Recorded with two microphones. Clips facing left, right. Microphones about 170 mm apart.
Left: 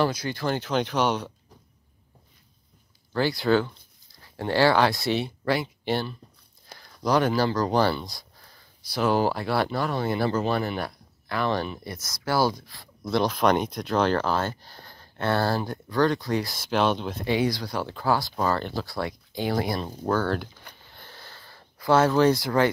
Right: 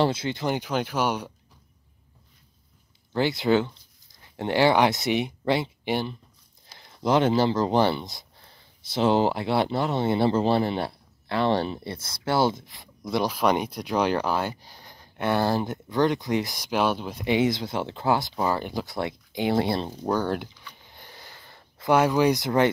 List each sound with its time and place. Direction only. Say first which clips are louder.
0.0 s speech: right 1 dB; 25° right (ahead or behind); by 1.3 s 10° right (ahead or behind)
3.1 s speech: even; 20° right (ahead or behind)
20.1 s speech: left 1 dB; 15° right (ahead or behind)
20.8 s a sound: even; 15° right (ahead or behind)